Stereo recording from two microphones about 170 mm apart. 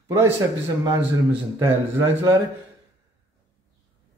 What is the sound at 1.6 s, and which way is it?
Speech, 15° right (ahead or behind).